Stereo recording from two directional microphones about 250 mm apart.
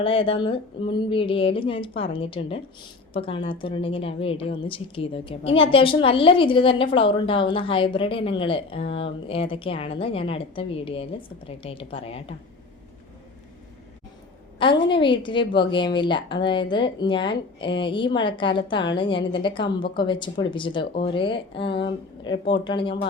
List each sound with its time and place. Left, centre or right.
0.0 s a woman's voice: left
14.6 s a woman's voice: centre